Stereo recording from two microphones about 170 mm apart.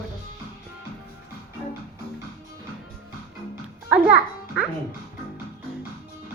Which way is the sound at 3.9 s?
5° right (ahead or behind).